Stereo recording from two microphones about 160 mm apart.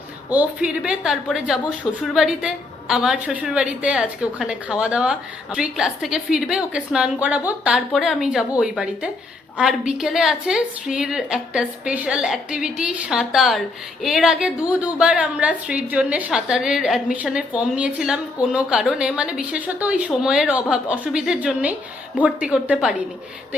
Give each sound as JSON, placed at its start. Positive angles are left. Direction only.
{"t": 0.3, "sound": "a woman's voice", "side_deg": -10}